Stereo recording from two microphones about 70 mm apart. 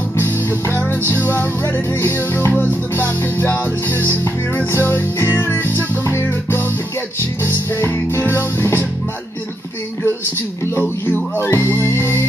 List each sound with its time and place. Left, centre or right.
0.2 s music: left
10.8 s music: left